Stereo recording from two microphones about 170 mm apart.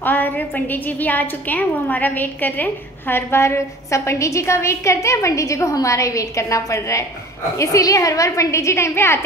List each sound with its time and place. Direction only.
0.0 s a woman's voice: 10° left (ahead or behind)